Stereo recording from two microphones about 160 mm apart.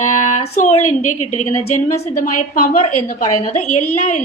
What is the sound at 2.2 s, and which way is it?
A woman's voice, 55° left (ahead or behind).